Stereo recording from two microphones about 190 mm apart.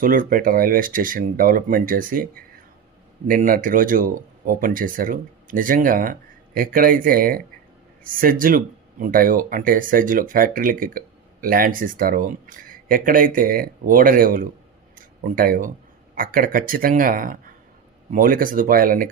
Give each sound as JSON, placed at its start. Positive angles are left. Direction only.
{"t": 0.0, "sound": "speech", "side_deg": -45}
{"t": 14.9, "sound": "a sound", "side_deg": -50}
{"t": 16.1, "sound": "speech", "side_deg": -45}